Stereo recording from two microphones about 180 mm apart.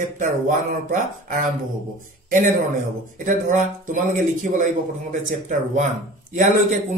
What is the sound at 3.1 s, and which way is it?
Speech, 45° right (ahead or behind).